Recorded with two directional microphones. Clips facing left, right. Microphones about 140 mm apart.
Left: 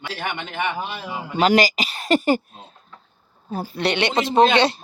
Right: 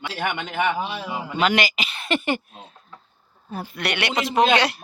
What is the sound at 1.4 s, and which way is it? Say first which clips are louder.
Speech: left 5 dB; 40° left (ahead or behind).